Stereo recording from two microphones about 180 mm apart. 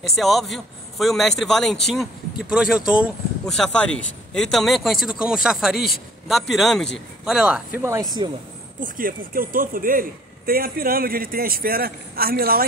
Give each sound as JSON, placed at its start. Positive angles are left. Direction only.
{"t": 0.1, "sound": "a man's voice", "side_deg": 0}
{"t": 8.8, "sound": "a man's voice", "side_deg": -50}